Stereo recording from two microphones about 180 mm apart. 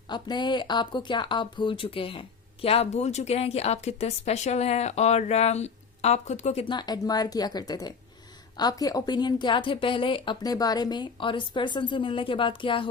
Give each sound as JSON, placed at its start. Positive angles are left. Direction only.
{"t": 0.1, "sound": "a woman's voice", "side_deg": 25}